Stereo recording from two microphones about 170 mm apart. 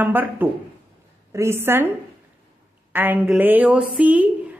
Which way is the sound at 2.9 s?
10° right (ahead or behind).